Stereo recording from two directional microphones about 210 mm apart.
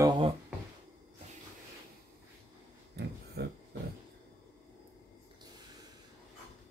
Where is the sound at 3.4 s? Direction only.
50° right (ahead or behind).